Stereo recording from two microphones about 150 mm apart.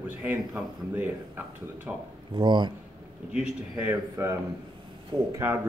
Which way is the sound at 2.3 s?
30° right (ahead or behind).